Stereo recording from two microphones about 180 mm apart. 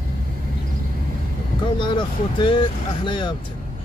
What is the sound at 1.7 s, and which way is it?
Speech, 25° left (ahead or behind).